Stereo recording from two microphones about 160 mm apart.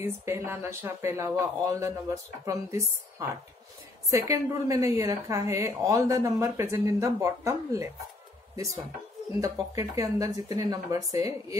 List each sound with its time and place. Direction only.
0.0 s a woman's voice: 15° right (ahead or behind)
9.4 s a woman's voice: 20° right (ahead or behind)